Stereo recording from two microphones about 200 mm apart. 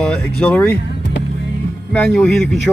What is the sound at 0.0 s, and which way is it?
Speech, 5° left (ahead or behind).